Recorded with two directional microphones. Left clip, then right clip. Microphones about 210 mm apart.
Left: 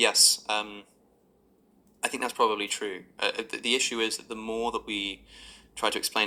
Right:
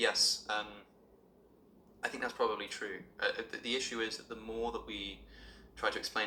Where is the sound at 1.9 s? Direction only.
50° left (ahead or behind).